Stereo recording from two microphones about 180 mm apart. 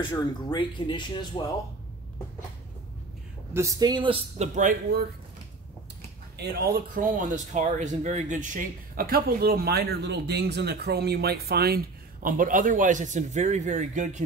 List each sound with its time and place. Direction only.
0.0 s speech: 25° left (ahead or behind)
3.5 s a man's voice: 20° right (ahead or behind); by 4.7 s 40° right (ahead or behind)
6.7 s speech: 50° right (ahead or behind)